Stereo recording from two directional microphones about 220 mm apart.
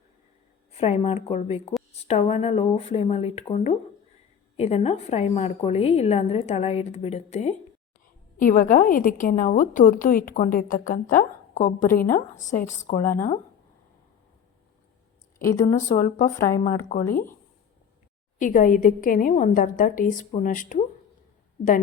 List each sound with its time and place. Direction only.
0.8 s a woman's voice: 30° left (ahead or behind)
15.4 s speech: 15° left (ahead or behind)
15.6 s a woman's voice: 35° left (ahead or behind)
18.3 s a woman's voice: 35° left (ahead or behind)